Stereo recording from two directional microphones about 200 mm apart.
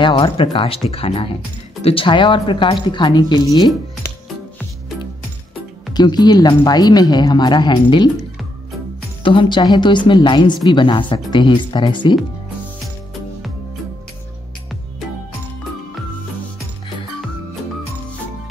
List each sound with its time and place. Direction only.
0.0 s a woman's voice: 25° left (ahead or behind)
5.9 s a woman's voice: 20° left (ahead or behind)